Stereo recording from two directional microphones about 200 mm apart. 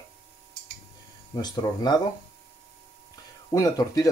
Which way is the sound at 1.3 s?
20° left (ahead or behind).